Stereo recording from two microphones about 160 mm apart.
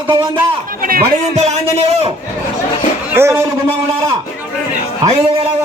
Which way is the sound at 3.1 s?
15° right (ahead or behind).